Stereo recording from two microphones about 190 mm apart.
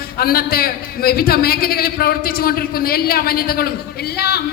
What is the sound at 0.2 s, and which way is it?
A man's voice, 50° left (ahead or behind).